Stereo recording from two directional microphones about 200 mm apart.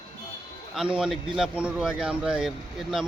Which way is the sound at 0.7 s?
5° right (ahead or behind).